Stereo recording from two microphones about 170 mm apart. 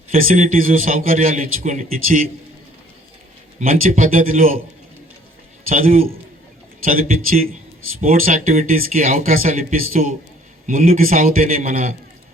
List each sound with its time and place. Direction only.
0.1 s a man's voice: 55° right (ahead or behind)
3.8 s speech: 50° right (ahead or behind)
5.6 s a man's voice: 55° right (ahead or behind)